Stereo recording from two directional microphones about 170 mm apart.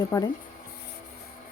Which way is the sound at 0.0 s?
20° left (ahead or behind).